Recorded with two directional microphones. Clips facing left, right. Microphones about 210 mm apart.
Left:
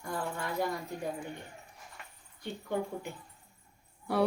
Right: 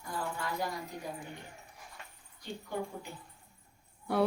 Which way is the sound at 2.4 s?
60° left (ahead or behind).